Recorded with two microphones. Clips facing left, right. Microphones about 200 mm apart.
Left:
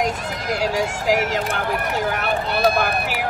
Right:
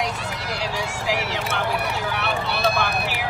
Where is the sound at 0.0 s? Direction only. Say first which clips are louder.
Left 4 dB; 45° left (ahead or behind).